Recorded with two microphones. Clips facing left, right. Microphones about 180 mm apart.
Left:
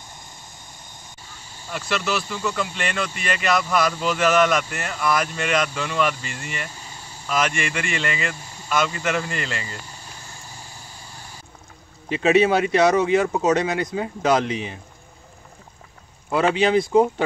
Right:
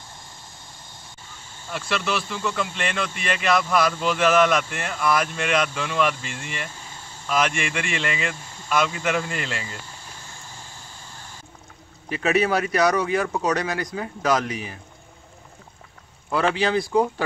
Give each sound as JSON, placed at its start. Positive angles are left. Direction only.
{"t": 1.4, "sound": "a sound", "side_deg": 10}
{"t": 1.7, "sound": "speech", "side_deg": 0}
{"t": 6.1, "sound": "vehicle", "side_deg": 5}
{"t": 7.2, "sound": "speech", "side_deg": 0}
{"t": 8.5, "sound": "a sound", "side_deg": 10}
{"t": 8.7, "sound": "speech", "side_deg": 0}
{"t": 9.7, "sound": "vehicle", "side_deg": 10}
{"t": 12.1, "sound": "speech", "side_deg": 25}
{"t": 16.3, "sound": "speech", "side_deg": 20}